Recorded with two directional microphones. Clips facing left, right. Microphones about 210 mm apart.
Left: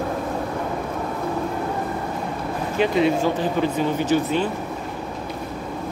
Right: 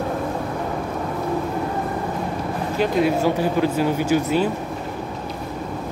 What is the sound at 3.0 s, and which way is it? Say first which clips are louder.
Speech: right 1 dB; 10° right (ahead or behind).